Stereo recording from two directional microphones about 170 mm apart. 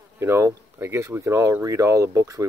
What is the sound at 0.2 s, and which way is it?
Speech, 15° right (ahead or behind).